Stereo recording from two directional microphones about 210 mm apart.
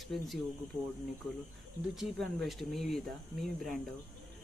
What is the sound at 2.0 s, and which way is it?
Speech, centre (ahead or behind).